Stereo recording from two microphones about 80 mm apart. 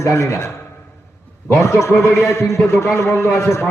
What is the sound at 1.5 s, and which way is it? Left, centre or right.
A man's voice, left.